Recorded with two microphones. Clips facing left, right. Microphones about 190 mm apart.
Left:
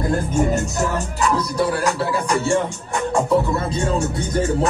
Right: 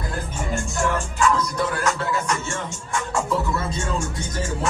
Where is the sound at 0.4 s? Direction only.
40° left (ahead or behind).